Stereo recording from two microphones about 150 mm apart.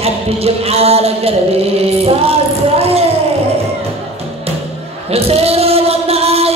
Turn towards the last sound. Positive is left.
turn(degrees=-40)  # may be behind; listen again after turning